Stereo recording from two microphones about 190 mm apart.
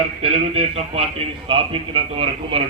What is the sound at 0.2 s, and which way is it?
A man's voice, 30° right (ahead or behind).